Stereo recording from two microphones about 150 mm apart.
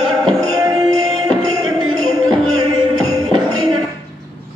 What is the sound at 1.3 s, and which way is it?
Music, 25° right (ahead or behind).